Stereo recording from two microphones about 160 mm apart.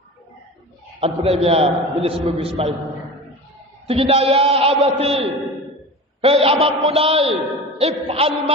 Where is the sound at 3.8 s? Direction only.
35° right (ahead or behind).